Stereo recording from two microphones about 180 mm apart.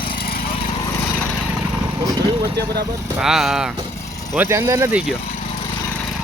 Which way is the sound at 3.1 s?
5° right (ahead or behind).